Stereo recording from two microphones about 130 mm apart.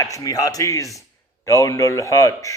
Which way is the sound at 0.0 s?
25° left (ahead or behind).